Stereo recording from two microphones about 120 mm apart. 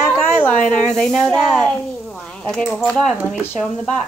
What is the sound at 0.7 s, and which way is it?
A woman's voice, 5° left (ahead or behind).